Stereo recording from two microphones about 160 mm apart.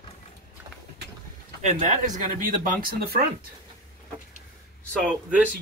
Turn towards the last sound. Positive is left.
turn(degrees=-5)  # may be behind; listen again after turning